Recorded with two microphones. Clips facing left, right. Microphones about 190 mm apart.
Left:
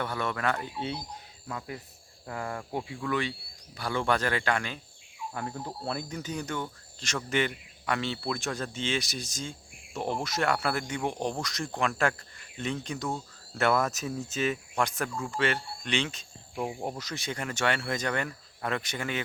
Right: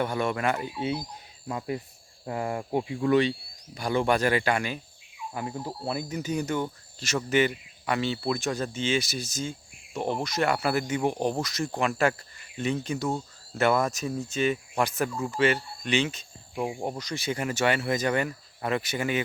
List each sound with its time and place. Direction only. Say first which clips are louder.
0.0 s speech: right 4 dB; 15° right (ahead or behind)
1.5 s speech: right 7 dB; 25° right (ahead or behind); by 13.1 s 5° right (ahead or behind)
13.1 s speech: right 4 dB; 20° right (ahead or behind)
13.6 s speech: right 2 dB; centre (ahead or behind)